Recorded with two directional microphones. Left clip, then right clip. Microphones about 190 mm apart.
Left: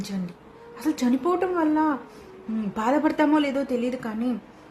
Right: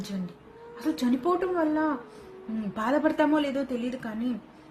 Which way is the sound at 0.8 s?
15° left (ahead or behind).